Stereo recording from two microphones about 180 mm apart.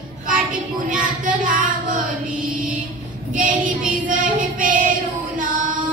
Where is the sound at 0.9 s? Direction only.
50° right (ahead or behind).